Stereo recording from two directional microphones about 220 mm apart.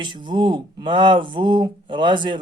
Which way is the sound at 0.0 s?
20° right (ahead or behind).